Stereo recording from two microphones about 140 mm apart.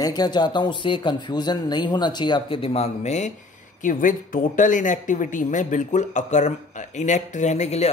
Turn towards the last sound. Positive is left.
turn(degrees=50)  # may be behind; listen again after turning